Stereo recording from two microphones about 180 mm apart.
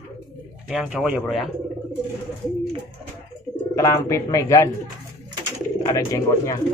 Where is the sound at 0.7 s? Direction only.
5° right (ahead or behind).